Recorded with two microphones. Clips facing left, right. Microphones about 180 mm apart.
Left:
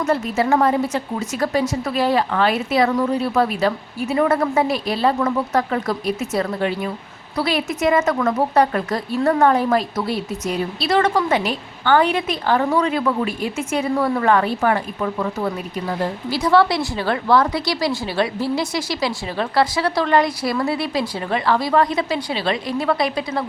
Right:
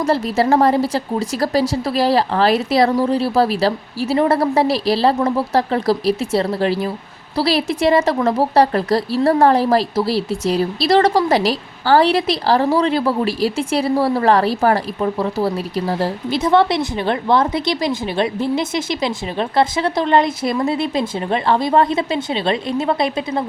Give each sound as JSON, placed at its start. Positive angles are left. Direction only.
{"t": 0.0, "sound": "a woman's voice", "side_deg": -35}
{"t": 16.3, "sound": "a woman's voice", "side_deg": -20}